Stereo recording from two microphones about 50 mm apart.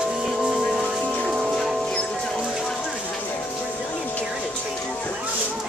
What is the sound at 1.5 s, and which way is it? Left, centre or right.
Music, centre.